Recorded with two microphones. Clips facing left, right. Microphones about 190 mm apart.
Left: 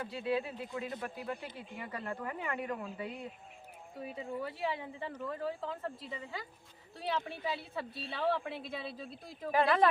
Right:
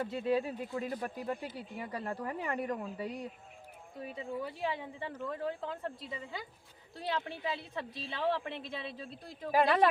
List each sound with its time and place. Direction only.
0.1 s speech: 45° right (ahead or behind)
4.0 s a woman's voice: centre (ahead or behind)
6.1 s a woman's voice: 10° right (ahead or behind)